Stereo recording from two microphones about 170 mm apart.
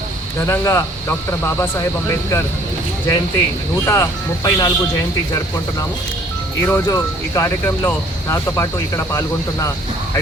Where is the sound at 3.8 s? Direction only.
20° left (ahead or behind).